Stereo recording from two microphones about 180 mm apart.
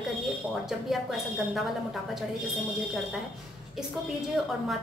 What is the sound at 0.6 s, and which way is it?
A woman's voice, centre (ahead or behind).